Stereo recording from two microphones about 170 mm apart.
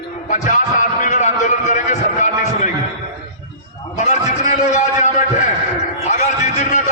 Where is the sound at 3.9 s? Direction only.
45° left (ahead or behind).